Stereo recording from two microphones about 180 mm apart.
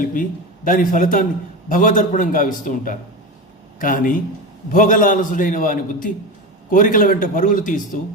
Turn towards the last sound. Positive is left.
turn(degrees=45)  # may be behind; listen again after turning